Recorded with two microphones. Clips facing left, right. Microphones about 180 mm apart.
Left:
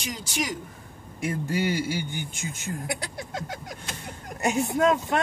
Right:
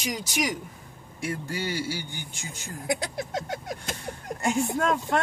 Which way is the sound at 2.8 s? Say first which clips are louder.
Right 4 dB; 20° right (ahead or behind).